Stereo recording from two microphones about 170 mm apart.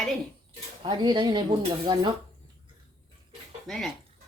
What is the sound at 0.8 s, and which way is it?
Speech, 25° right (ahead or behind).